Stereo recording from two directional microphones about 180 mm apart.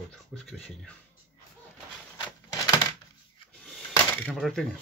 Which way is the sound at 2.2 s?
25° left (ahead or behind).